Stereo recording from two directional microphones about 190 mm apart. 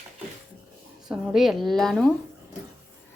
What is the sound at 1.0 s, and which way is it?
Speech, centre (ahead or behind).